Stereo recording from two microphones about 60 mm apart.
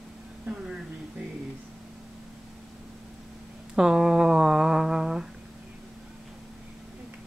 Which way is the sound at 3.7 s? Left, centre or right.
Centre.